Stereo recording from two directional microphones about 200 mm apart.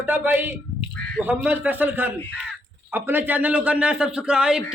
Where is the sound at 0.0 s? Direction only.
10° right (ahead or behind).